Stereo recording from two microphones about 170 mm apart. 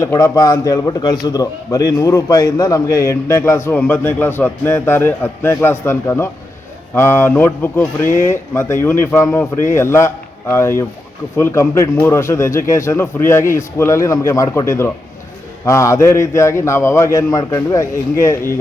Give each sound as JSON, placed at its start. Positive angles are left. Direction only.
{"t": 0.0, "sound": "a man's voice", "side_deg": 15}